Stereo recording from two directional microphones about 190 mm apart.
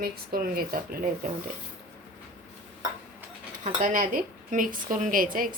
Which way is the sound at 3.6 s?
45° right (ahead or behind).